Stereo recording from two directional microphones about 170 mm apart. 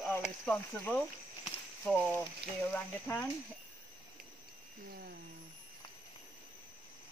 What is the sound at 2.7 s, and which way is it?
Speech, 10° left (ahead or behind).